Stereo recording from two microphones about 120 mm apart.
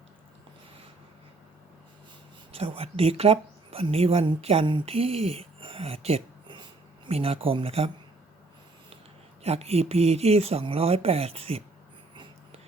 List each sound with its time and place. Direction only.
2.5 s speech: 50° right (ahead or behind)
9.4 s speech: 60° right (ahead or behind)